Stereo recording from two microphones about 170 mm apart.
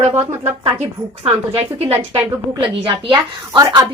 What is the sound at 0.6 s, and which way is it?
Speech, 35° right (ahead or behind).